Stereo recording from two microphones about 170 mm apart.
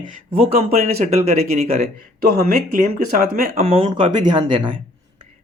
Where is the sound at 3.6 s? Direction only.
35° right (ahead or behind).